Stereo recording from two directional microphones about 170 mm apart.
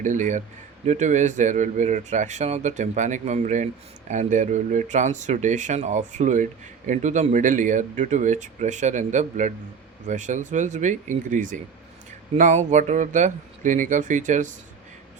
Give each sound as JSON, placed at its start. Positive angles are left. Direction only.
{"t": 0.0, "sound": "speech", "side_deg": -50}